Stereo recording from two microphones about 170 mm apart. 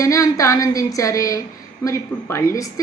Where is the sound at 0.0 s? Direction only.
20° left (ahead or behind).